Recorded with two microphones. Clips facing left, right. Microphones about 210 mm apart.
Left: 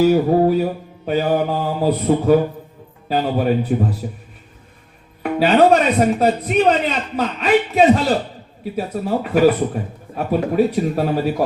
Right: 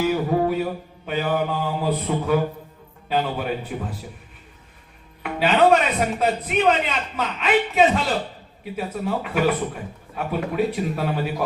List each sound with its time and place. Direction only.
0.0 s a man's voice: 40° left (ahead or behind)
5.2 s a man's voice: 40° left (ahead or behind)